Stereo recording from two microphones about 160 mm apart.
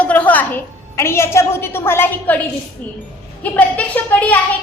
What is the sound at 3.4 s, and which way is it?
A woman's voice, 10° left (ahead or behind).